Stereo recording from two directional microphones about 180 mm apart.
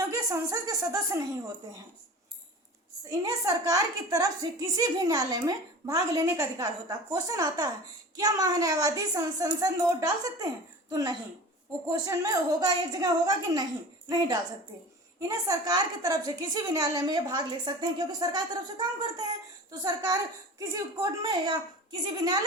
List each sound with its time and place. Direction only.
0.1 s a woman's voice: 20° right (ahead or behind)
3.1 s a woman's voice: 20° right (ahead or behind)